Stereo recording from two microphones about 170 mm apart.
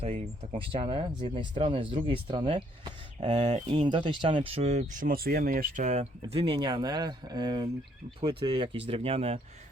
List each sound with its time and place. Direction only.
0.0 s speech: 30° right (ahead or behind)